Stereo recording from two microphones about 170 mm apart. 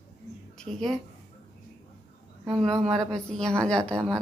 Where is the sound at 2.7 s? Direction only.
20° right (ahead or behind).